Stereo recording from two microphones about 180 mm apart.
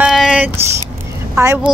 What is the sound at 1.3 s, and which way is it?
Speech, 15° right (ahead or behind).